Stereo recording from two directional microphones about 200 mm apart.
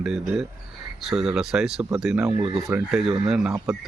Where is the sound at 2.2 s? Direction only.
25° right (ahead or behind).